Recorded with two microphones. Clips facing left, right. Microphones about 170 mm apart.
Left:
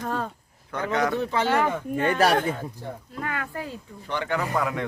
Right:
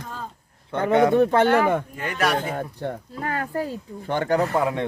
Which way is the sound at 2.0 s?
30° left (ahead or behind).